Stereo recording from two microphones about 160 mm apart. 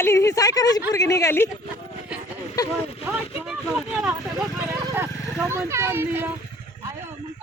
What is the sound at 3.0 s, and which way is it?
Speech, 10° right (ahead or behind).